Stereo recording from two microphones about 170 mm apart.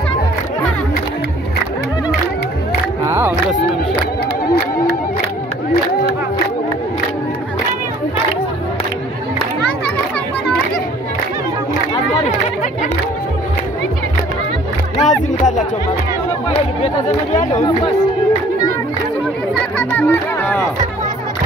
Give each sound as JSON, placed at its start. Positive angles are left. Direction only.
{"t": 3.1, "sound": "music", "side_deg": -15}
{"t": 15.0, "sound": "music", "side_deg": 45}
{"t": 17.4, "sound": "music", "side_deg": 45}
{"t": 19.8, "sound": "chatter", "side_deg": 15}